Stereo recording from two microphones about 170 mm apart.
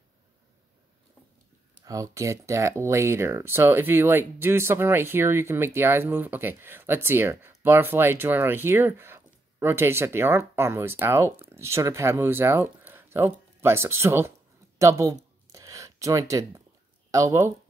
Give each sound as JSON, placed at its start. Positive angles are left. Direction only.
{"t": 1.9, "sound": "speech", "side_deg": -20}
{"t": 15.4, "sound": "a sound", "side_deg": -20}
{"t": 17.1, "sound": "speech", "side_deg": -20}